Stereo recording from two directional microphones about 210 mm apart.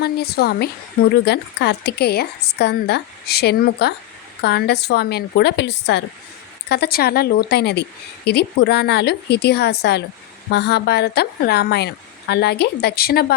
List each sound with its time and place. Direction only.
0.0 s a woman's voice: 50° left (ahead or behind)